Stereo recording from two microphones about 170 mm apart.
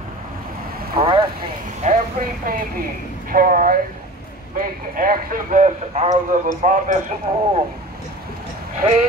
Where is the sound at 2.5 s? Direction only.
60° right (ahead or behind).